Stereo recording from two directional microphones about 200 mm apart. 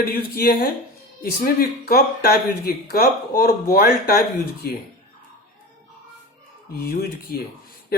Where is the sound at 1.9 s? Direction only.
50° left (ahead or behind).